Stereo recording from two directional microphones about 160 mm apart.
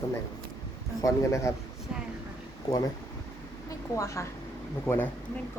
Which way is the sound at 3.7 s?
20° left (ahead or behind).